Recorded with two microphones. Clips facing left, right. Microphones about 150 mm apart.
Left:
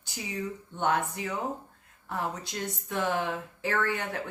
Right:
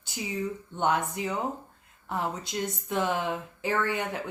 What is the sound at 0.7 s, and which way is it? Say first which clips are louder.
Speech: right 1 dB; 20° right (ahead or behind).